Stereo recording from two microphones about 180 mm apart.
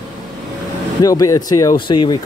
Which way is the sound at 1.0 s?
20° left (ahead or behind).